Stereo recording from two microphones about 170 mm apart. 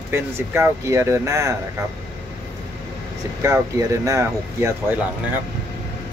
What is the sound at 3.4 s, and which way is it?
Speech, 20° right (ahead or behind).